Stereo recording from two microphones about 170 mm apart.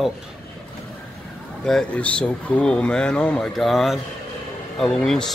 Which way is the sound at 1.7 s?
5° left (ahead or behind).